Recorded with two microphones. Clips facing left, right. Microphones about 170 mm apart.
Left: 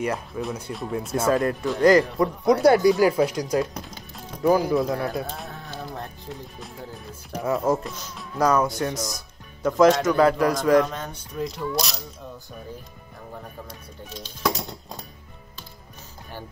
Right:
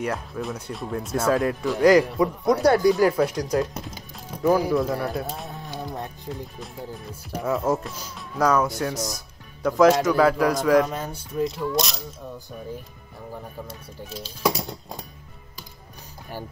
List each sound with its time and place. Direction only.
0.0 s speech: centre (ahead or behind)
5.5 s a sound: 15° right (ahead or behind)
7.3 s speech: centre (ahead or behind)
8.6 s speech: 5° right (ahead or behind)
14.4 s speech: 10° right (ahead or behind)